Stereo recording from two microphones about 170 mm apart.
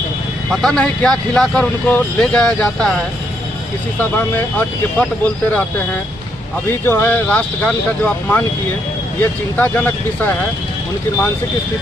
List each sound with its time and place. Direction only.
0.5 s speech: centre (ahead or behind)
4.5 s speech: 10° left (ahead or behind)
6.8 s speech: 10° left (ahead or behind)
9.6 s speech: 10° left (ahead or behind)